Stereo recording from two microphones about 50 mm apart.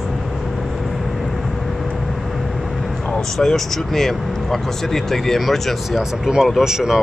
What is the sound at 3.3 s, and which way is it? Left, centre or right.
Speech, centre.